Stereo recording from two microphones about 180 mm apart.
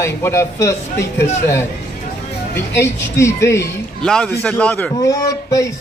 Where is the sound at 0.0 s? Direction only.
15° left (ahead or behind).